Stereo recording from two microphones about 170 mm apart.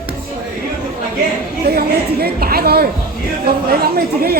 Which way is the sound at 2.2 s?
65° right (ahead or behind).